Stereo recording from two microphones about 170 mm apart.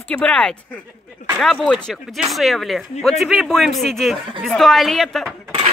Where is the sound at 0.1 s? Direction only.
5° left (ahead or behind).